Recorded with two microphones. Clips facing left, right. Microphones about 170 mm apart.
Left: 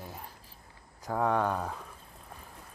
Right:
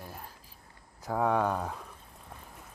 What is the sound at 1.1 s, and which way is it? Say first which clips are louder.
Speech: right 1 dB; 5° right (ahead or behind).